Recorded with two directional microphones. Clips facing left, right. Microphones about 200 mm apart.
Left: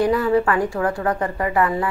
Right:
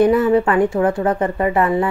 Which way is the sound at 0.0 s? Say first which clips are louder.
Right 4 dB; 25° right (ahead or behind).